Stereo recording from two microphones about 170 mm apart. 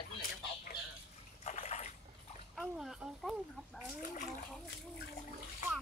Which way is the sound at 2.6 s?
Centre (ahead or behind).